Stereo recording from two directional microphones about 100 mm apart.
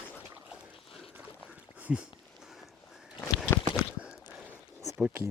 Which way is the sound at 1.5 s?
10° right (ahead or behind).